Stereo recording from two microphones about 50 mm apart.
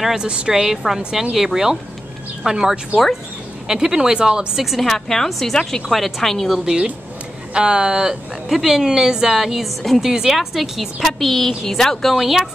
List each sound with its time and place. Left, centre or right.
0.0 s speech: centre
4.7 s speech: centre
7.5 s speech: centre